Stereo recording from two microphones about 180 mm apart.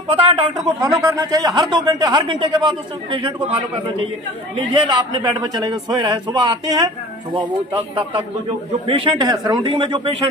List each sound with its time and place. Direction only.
0.1 s speech: 30° right (ahead or behind)
0.7 s speech: 20° right (ahead or behind)
4.6 s speech: 25° right (ahead or behind)